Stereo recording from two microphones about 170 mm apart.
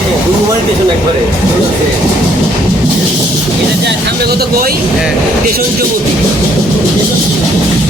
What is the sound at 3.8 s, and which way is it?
Speech, 70° right (ahead or behind).